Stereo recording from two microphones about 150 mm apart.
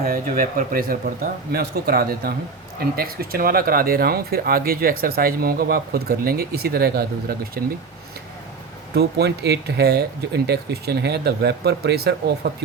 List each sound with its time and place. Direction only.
0.0 s speech: 70° right (ahead or behind); by 7.6 s 90° right
9.0 s speech: 90° right